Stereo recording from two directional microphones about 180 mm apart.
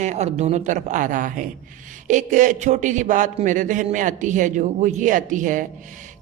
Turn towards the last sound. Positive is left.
turn(degrees=-45)  # may be behind; listen again after turning